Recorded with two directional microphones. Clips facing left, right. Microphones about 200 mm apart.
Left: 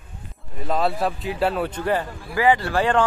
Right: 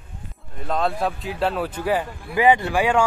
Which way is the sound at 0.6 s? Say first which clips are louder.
Left 1 dB; 5° left (ahead or behind).